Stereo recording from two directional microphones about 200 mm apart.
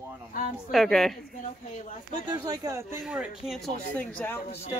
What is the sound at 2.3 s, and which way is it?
Speech, 20° right (ahead or behind).